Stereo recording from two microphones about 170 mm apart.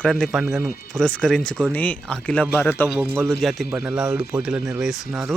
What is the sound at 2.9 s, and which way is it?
Speech, 10° right (ahead or behind).